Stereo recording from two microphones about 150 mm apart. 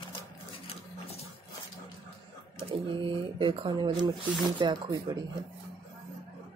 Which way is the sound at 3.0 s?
35° right (ahead or behind).